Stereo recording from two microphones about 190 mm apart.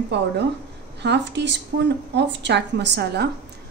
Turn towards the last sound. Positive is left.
turn(degrees=-60)  # may be behind; listen again after turning